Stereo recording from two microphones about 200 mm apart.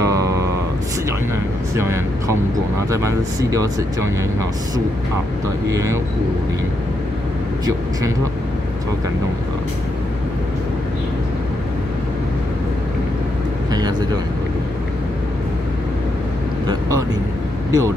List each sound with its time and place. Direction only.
0.0 s a sound: 15° right (ahead or behind)
1.8 s speech: 15° right (ahead or behind)
5.7 s speech: 15° right (ahead or behind)
13.7 s vehicle: 20° right (ahead or behind)
17.6 s speech: 15° right (ahead or behind)